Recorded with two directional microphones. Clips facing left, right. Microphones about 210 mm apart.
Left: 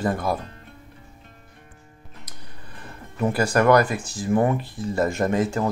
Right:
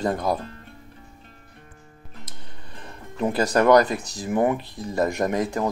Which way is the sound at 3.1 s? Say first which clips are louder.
Even; 20° right (ahead or behind).